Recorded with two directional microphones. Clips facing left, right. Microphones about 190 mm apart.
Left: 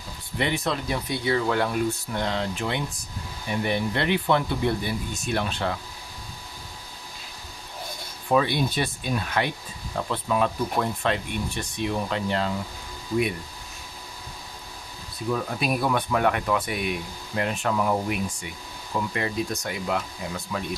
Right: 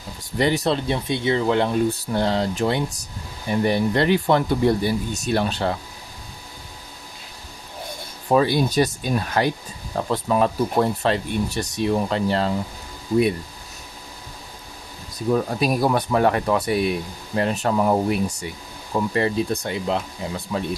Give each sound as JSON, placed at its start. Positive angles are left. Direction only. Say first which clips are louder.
{"t": 0.4, "sound": "speech", "louder": "right 6 dB", "side_deg": -35}
{"t": 1.9, "sound": "speech", "louder": "right 6 dB", "side_deg": -35}
{"t": 8.3, "sound": "speech", "louder": "right 4 dB", "side_deg": -40}
{"t": 15.1, "sound": "speech", "louder": "right 6 dB", "side_deg": -35}